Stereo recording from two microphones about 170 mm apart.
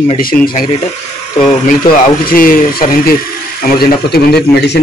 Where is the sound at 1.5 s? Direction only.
55° left (ahead or behind).